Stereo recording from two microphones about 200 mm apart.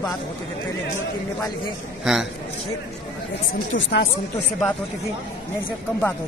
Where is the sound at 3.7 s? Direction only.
60° left (ahead or behind).